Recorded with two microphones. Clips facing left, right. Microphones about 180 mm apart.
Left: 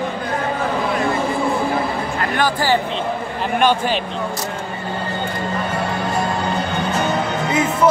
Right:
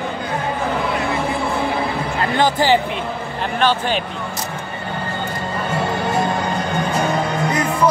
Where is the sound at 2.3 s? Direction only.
20° right (ahead or behind).